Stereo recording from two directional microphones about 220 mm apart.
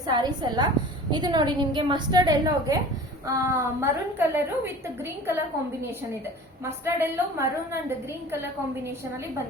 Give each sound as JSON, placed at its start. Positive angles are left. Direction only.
{"t": 0.1, "sound": "a woman's voice", "side_deg": -20}
{"t": 6.7, "sound": "a woman's voice", "side_deg": -10}